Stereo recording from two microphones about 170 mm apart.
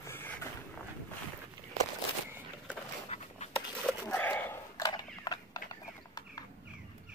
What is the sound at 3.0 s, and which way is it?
Writing, 40° left (ahead or behind).